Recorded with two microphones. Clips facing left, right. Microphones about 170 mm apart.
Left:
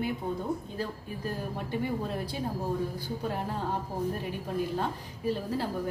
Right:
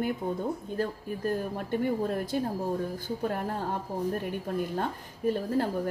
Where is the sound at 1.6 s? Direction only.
50° right (ahead or behind).